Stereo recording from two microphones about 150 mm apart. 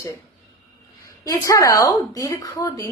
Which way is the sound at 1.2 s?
25° left (ahead or behind).